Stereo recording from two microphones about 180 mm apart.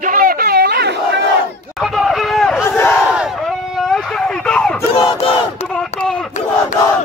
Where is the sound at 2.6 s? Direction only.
15° left (ahead or behind).